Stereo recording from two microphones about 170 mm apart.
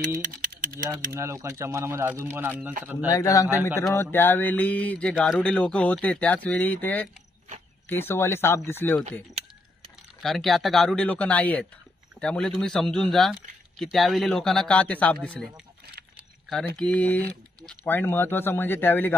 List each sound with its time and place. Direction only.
0.0 s speech: 55° right (ahead or behind)
1.1 s speech: 15° right (ahead or behind)
3.1 s a man's voice: 20° left (ahead or behind)
10.2 s speech: centre (ahead or behind)
16.7 s speech: 5° left (ahead or behind)